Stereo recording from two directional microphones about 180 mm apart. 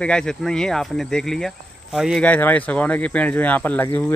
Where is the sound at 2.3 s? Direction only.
10° left (ahead or behind).